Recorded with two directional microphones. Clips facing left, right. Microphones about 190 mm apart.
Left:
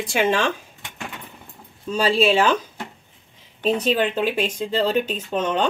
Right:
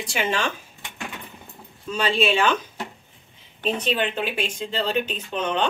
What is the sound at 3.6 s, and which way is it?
Speech, 40° left (ahead or behind).